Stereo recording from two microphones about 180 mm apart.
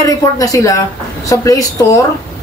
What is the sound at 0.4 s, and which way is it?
A woman's voice, 20° left (ahead or behind).